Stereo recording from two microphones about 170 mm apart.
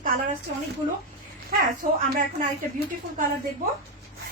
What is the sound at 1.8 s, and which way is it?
Speech, 55° right (ahead or behind).